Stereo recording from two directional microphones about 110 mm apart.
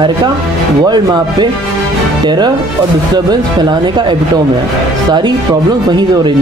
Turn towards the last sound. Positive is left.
turn(degrees=-40)  # may be behind; listen again after turning